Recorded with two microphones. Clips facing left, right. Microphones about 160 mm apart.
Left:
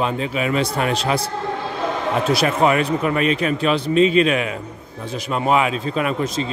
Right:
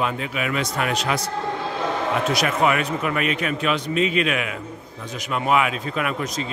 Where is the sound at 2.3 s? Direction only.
30° left (ahead or behind).